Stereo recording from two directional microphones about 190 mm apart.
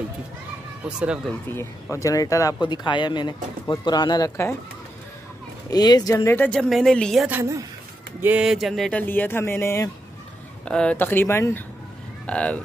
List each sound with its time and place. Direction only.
0.8 s speech: 5° right (ahead or behind)
1.5 s speech: 15° left (ahead or behind)
5.7 s speech: 20° left (ahead or behind); by 7.2 s centre (ahead or behind)
7.2 s a woman's voice: 15° right (ahead or behind); by 12.6 s 5° left (ahead or behind)